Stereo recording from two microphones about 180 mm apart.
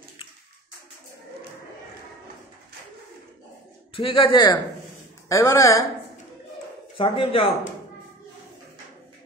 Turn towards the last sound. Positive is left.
turn(degrees=30)  # may be behind; listen again after turning